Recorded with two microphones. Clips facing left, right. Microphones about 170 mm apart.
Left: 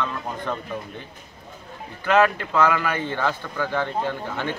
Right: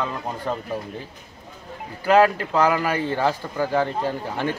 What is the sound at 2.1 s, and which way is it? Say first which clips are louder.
Speech: right 2 dB; 35° right (ahead or behind).